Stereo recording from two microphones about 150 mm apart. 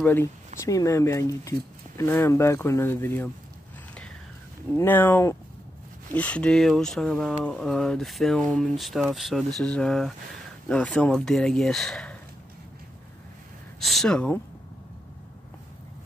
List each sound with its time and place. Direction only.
0.0 s speech: 15° left (ahead or behind)
4.7 s speech: 15° left (ahead or behind)
13.7 s speech: centre (ahead or behind)